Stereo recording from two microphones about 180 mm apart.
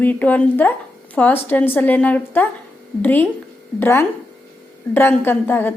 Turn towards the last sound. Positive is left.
turn(degrees=10)  # may be behind; listen again after turning